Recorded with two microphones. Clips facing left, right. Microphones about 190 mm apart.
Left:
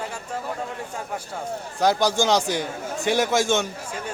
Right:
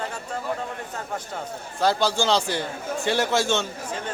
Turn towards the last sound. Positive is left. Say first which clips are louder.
# left 2 dB
turn(degrees=15)  # may be behind; listen again after turning